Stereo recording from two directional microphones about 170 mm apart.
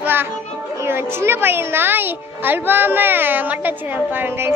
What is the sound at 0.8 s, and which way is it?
Speech, 15° right (ahead or behind).